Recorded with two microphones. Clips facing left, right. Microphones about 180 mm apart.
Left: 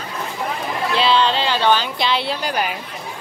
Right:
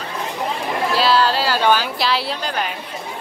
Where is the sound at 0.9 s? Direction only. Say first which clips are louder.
Even; centre (ahead or behind).